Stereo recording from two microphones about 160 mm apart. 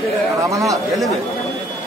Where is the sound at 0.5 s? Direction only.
20° right (ahead or behind).